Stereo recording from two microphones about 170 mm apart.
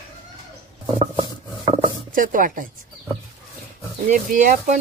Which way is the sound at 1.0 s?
30° right (ahead or behind).